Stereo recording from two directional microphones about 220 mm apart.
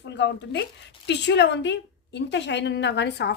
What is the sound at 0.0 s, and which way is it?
A woman's voice, 50° left (ahead or behind).